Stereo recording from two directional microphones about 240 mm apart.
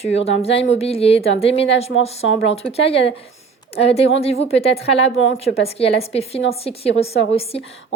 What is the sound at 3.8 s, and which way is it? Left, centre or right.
A woman's voice, left.